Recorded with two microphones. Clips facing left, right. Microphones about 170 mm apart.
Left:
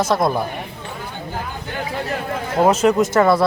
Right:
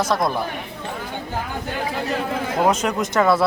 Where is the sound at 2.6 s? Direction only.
5° left (ahead or behind).